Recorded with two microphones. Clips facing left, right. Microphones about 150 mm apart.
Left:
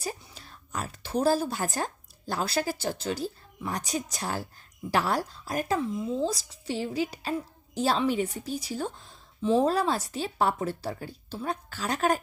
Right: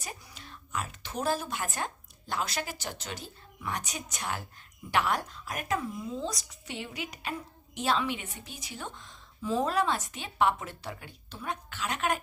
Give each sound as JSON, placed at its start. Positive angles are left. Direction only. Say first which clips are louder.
{"t": 0.0, "sound": "a woman's voice", "louder": "left 7 dB", "side_deg": 35}